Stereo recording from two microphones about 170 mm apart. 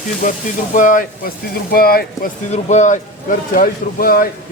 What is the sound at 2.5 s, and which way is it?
Speech, 45° left (ahead or behind).